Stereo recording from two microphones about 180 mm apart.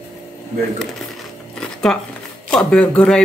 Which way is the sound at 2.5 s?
5° left (ahead or behind).